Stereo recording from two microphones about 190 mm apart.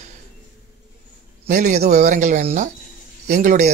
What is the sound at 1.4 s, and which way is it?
A man's voice, 40° right (ahead or behind).